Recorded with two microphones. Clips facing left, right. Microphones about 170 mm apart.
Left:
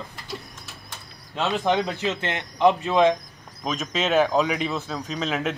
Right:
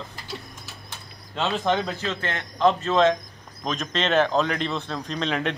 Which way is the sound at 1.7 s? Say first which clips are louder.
Left 3 dB; 15° left (ahead or behind).